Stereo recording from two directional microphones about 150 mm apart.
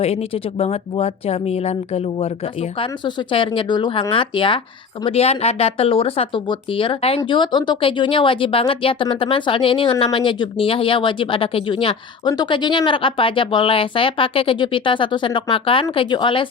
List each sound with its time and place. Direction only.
0.6 s speech: 40° left (ahead or behind)
3.3 s speech: 35° left (ahead or behind)